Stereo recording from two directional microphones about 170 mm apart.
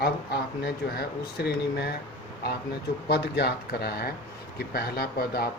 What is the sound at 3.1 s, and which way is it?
Speech, 75° left (ahead or behind).